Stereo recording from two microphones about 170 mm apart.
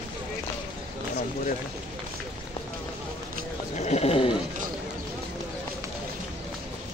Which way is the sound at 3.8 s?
40° left (ahead or behind).